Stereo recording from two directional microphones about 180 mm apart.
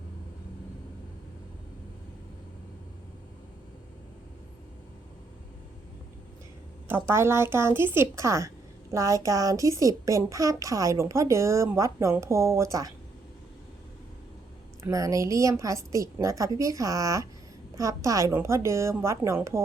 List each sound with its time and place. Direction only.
6.8 s a woman's voice: 15° right (ahead or behind)
14.8 s a woman's voice: 20° right (ahead or behind)